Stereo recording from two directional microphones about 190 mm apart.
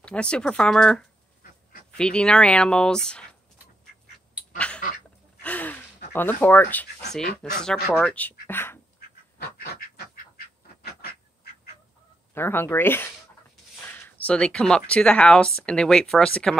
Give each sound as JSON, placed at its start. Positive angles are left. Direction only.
{"t": 0.0, "sound": "speech", "side_deg": 5}
{"t": 4.6, "sound": "duck", "side_deg": 5}
{"t": 5.4, "sound": "gasp", "side_deg": 10}
{"t": 6.1, "sound": "speech", "side_deg": 10}
{"t": 10.3, "sound": "duck", "side_deg": 55}
{"t": 12.4, "sound": "speech", "side_deg": 10}